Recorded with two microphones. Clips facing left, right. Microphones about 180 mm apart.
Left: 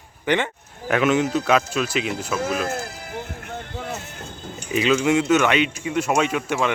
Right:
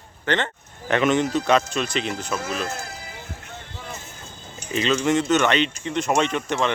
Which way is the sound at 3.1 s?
60° left (ahead or behind).